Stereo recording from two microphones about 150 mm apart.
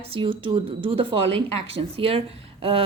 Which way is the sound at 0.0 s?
35° right (ahead or behind).